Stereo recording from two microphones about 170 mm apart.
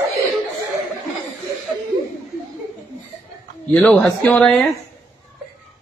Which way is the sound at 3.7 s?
5° left (ahead or behind).